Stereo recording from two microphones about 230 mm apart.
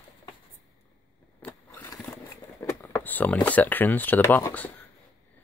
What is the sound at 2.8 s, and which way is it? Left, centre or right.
Speech, centre.